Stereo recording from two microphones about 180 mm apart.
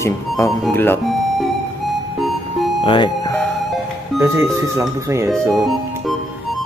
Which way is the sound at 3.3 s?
5° left (ahead or behind).